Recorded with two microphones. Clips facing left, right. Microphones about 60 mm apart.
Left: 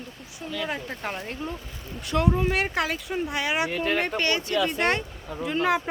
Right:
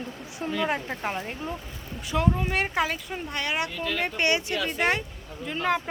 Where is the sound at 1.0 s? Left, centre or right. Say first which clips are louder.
Right 1 dB; centre.